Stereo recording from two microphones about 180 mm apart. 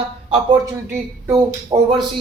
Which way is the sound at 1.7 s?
25° right (ahead or behind).